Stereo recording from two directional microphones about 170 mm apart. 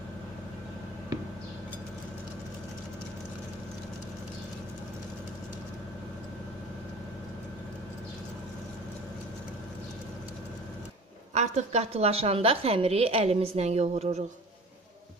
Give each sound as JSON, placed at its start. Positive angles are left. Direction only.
{"t": 11.3, "sound": "a woman's voice", "side_deg": -40}